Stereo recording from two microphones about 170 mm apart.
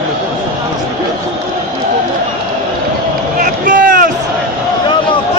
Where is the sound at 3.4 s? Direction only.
55° right (ahead or behind).